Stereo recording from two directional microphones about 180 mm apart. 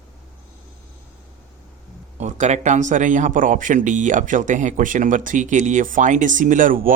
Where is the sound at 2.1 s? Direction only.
40° right (ahead or behind).